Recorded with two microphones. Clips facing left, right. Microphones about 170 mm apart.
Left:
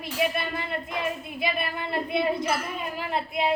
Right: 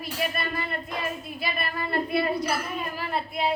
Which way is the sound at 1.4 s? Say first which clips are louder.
Left 2 dB; 20° left (ahead or behind).